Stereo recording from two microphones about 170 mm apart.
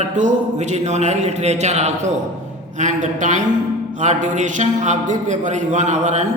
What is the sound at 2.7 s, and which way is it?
Mantra, 45° right (ahead or behind).